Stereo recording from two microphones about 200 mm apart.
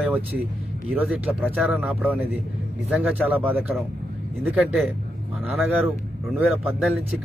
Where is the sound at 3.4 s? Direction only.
5° right (ahead or behind).